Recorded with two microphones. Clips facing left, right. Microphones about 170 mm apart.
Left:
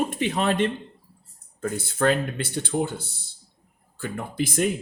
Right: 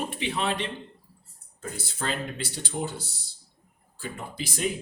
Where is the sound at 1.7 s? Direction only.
55° left (ahead or behind).